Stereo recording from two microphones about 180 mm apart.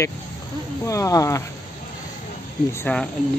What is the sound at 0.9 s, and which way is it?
Speech, 20° left (ahead or behind).